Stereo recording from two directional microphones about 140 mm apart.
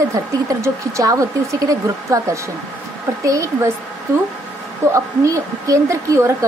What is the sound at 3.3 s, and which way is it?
Speech, 25° right (ahead or behind).